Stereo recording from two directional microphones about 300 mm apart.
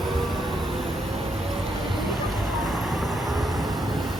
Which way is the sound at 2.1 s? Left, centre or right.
Centre.